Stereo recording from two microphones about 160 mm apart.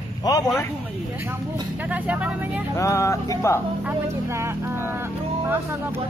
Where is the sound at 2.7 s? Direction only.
20° left (ahead or behind).